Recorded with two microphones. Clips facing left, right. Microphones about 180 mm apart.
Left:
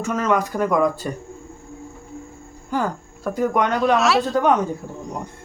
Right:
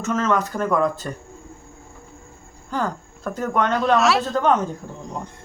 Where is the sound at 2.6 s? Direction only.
10° left (ahead or behind).